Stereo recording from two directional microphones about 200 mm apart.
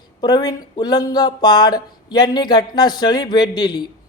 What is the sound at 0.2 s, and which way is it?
A man's voice, 20° left (ahead or behind).